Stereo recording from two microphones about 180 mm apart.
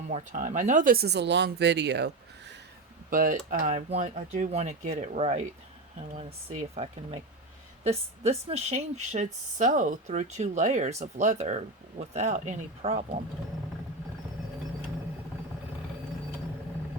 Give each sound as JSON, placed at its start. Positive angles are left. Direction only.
{"t": 0.1, "sound": "speech", "side_deg": -40}
{"t": 3.1, "sound": "a woman's voice", "side_deg": -50}